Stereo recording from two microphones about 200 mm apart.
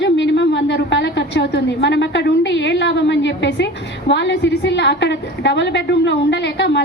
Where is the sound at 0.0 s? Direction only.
65° left (ahead or behind).